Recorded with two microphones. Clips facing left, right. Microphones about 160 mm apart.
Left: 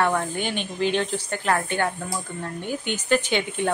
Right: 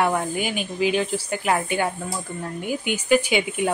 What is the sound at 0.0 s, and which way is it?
Speech, 10° right (ahead or behind).